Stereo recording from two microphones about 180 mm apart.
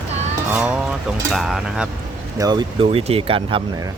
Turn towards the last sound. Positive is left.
turn(degrees=-30)  # may be behind; listen again after turning